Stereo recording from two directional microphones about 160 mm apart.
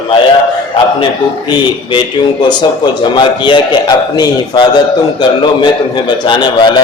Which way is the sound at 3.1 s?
30° left (ahead or behind).